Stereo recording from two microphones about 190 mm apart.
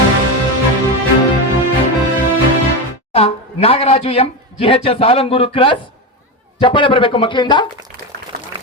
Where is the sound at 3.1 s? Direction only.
30° left (ahead or behind).